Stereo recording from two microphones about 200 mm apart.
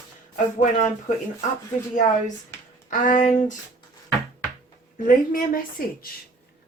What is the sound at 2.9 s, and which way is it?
Speech, 40° left (ahead or behind).